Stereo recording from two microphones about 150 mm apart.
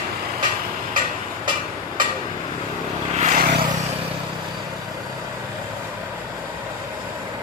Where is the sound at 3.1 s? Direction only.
50° right (ahead or behind).